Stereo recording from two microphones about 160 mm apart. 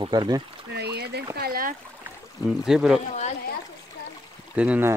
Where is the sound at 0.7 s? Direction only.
90° right.